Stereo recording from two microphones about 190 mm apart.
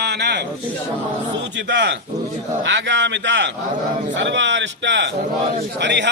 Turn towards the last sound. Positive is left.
turn(degrees=-65)  # may be behind; listen again after turning